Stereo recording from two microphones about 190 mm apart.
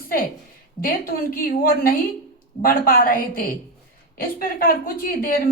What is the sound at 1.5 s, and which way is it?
A woman's voice, 50° left (ahead or behind).